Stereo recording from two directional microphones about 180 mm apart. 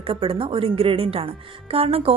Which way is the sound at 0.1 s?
30° right (ahead or behind).